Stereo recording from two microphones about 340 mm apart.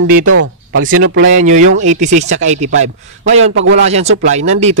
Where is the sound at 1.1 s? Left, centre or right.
Right.